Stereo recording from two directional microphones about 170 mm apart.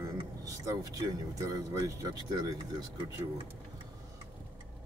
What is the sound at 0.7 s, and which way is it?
Speech, 20° right (ahead or behind).